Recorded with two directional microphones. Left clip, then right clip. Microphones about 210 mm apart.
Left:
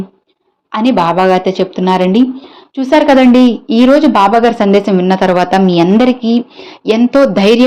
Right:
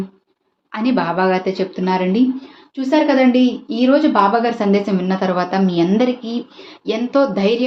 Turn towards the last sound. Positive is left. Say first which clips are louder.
# left 8 dB
turn(degrees=40)  # may be behind; listen again after turning